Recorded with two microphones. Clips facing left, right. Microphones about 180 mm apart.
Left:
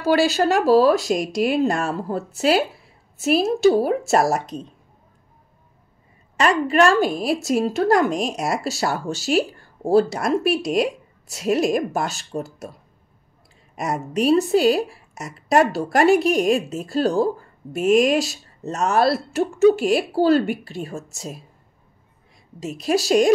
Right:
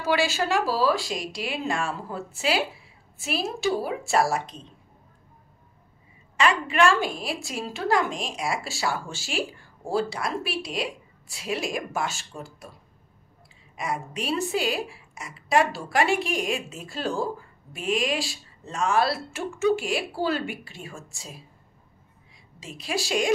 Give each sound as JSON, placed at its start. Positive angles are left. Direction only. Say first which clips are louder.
{"t": 0.0, "sound": "a woman's voice", "louder": "left 7 dB", "side_deg": 40}
{"t": 6.3, "sound": "a woman's voice", "louder": "left 5 dB", "side_deg": 40}
{"t": 13.7, "sound": "a woman's voice", "louder": "left 8 dB", "side_deg": 40}